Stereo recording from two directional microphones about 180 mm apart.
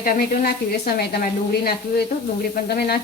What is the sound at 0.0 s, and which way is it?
Speech, 55° left (ahead or behind).